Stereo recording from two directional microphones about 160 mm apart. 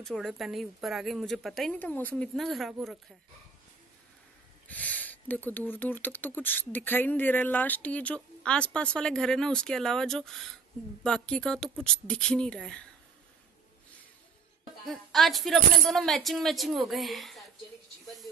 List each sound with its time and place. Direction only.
0.0 s speech: centre (ahead or behind)
4.6 s speech: 10° left (ahead or behind)
14.9 s speech: centre (ahead or behind)
18.0 s a sound: centre (ahead or behind)